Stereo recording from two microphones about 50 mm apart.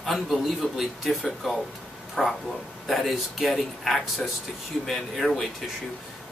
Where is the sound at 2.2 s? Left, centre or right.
Centre.